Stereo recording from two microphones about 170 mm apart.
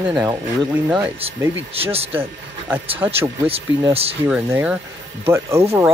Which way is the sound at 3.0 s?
15° right (ahead or behind).